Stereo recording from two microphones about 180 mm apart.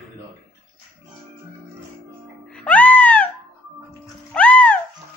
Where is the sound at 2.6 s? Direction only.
10° left (ahead or behind).